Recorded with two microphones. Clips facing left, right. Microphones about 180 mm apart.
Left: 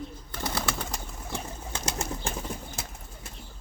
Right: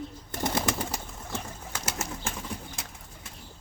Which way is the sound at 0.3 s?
20° right (ahead or behind).